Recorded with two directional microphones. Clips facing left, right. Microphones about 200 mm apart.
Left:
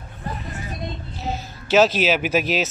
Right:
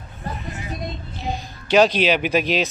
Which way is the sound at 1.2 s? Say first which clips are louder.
Even; 5° left (ahead or behind).